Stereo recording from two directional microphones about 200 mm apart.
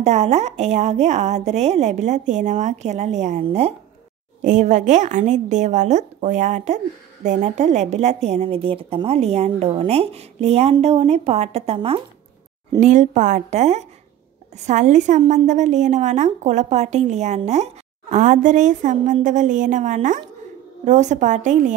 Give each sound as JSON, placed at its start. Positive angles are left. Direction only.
{"t": 0.0, "sound": "a woman's voice", "side_deg": -35}